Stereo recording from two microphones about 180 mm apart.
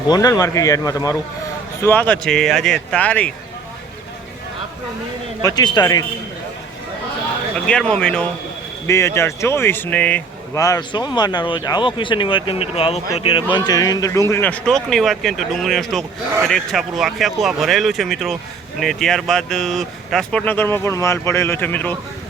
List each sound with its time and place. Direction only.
0.1 s speech: 20° left (ahead or behind)
5.4 s speech: 20° left (ahead or behind)
7.7 s speech: 5° left (ahead or behind)
10.6 s speech: 20° left (ahead or behind)